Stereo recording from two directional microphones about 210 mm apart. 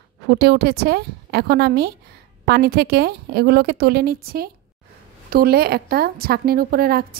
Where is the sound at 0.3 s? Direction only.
50° right (ahead or behind).